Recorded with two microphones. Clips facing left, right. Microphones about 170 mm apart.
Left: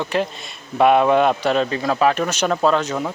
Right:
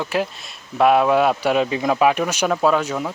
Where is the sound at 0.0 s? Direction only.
5° right (ahead or behind).